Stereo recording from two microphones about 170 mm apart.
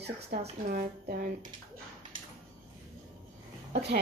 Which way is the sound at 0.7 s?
60° right (ahead or behind).